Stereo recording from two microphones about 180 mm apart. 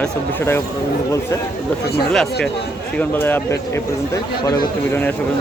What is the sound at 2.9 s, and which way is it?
Speech, 10° left (ahead or behind).